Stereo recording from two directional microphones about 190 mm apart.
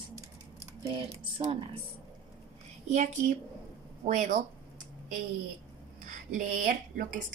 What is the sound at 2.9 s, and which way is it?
Speech, 40° right (ahead or behind).